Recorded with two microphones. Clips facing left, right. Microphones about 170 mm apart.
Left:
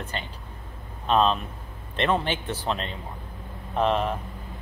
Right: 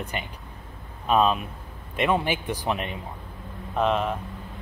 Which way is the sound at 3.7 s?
Centre (ahead or behind).